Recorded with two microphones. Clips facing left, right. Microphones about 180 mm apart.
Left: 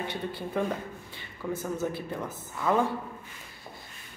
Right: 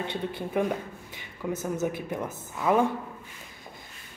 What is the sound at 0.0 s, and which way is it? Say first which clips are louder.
Speech: right 2 dB; 20° right (ahead or behind).